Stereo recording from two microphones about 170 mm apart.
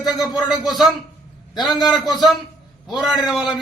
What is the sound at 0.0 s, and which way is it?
Speech, centre (ahead or behind).